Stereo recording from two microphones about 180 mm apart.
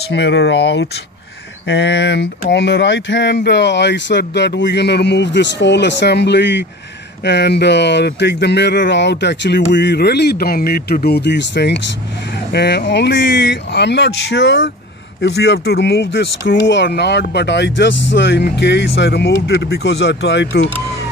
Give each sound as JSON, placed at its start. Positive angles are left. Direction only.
{"t": 0.1, "sound": "speech", "side_deg": 75}
{"t": 15.2, "sound": "speech", "side_deg": 65}